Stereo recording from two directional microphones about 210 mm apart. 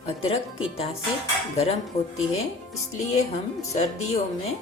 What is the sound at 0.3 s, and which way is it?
Speech, 25° left (ahead or behind).